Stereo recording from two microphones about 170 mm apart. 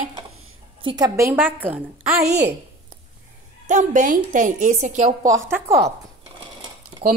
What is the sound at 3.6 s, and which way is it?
A woman's voice, 50° right (ahead or behind).